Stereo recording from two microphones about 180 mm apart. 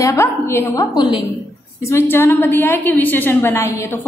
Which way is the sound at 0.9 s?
25° left (ahead or behind).